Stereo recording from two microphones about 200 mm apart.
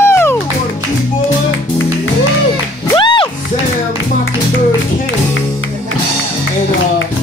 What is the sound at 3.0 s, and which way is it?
Music, 25° left (ahead or behind).